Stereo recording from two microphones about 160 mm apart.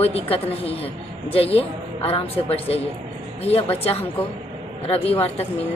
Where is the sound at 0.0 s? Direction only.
40° left (ahead or behind).